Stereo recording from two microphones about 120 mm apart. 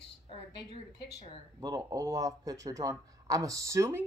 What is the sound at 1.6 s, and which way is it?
Speech, 30° right (ahead or behind).